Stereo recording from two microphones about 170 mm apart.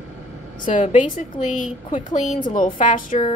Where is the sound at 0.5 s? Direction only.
50° left (ahead or behind).